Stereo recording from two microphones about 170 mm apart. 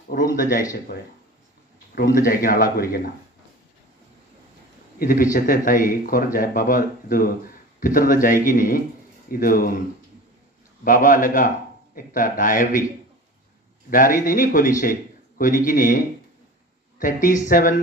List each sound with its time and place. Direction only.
0.1 s speech: 55° left (ahead or behind)
2.0 s speech: 55° left (ahead or behind)
4.9 s a man's voice: 55° left (ahead or behind)
10.8 s speech: 55° left (ahead or behind)
13.8 s a man's voice: 55° left (ahead or behind)
17.0 s a man's voice: 50° left (ahead or behind)